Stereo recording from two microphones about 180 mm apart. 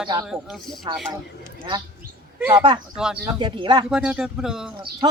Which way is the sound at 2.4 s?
20° right (ahead or behind).